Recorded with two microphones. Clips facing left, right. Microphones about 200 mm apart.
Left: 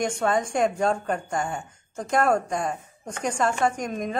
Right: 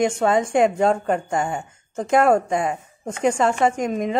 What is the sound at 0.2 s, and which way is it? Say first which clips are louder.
Speech: right 5 dB; 25° right (ahead or behind).